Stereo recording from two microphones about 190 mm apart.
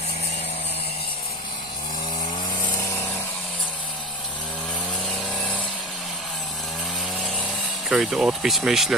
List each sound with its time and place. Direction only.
2.6 s power tool: 15° left (ahead or behind)
5.0 s vehicle: 5° left (ahead or behind)
7.9 s speech: centre (ahead or behind)